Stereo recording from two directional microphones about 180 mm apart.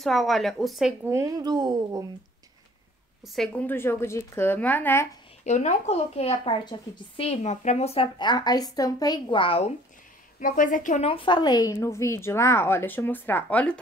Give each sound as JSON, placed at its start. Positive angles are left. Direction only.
{"t": 0.0, "sound": "a woman's voice", "side_deg": 0}
{"t": 1.1, "sound": "speech", "side_deg": -20}
{"t": 3.3, "sound": "a woman's voice", "side_deg": 10}
{"t": 5.4, "sound": "speech", "side_deg": 40}
{"t": 10.4, "sound": "a woman's voice", "side_deg": 45}